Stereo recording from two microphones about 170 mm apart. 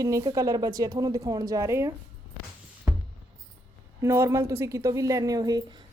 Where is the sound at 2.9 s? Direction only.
15° right (ahead or behind).